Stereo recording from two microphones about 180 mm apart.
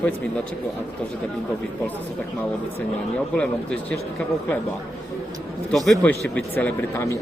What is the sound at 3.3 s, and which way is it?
Speech, 5° left (ahead or behind).